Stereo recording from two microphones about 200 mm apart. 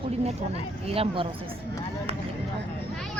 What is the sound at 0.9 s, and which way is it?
Speech, 25° right (ahead or behind).